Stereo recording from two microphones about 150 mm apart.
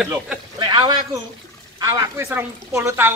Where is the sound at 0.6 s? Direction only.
30° right (ahead or behind).